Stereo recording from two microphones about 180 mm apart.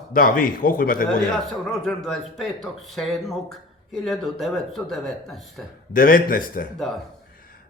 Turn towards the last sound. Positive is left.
turn(degrees=50)  # may be behind; listen again after turning